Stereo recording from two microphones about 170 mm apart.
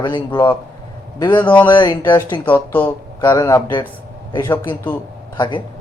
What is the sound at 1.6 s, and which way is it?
Speech, 25° left (ahead or behind).